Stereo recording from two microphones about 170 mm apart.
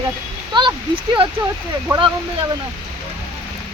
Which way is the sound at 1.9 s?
25° right (ahead or behind).